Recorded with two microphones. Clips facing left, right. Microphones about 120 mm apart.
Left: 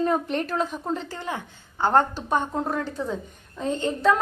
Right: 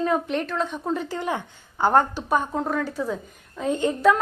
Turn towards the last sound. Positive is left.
turn(degrees=-15)  # may be behind; listen again after turning